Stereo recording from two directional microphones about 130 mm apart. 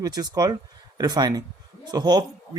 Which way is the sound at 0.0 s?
30° right (ahead or behind).